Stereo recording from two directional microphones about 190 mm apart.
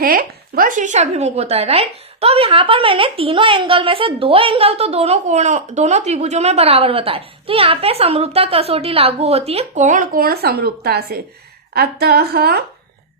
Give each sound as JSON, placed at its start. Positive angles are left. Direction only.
{"t": 0.0, "sound": "a woman's voice", "side_deg": -50}